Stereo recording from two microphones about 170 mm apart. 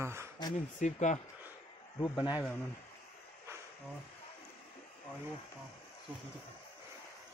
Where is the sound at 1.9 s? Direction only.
20° left (ahead or behind).